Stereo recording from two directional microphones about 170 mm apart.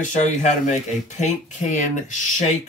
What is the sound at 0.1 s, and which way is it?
Speech, 45° left (ahead or behind).